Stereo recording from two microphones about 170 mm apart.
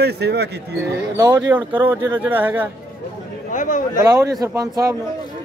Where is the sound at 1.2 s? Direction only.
20° right (ahead or behind).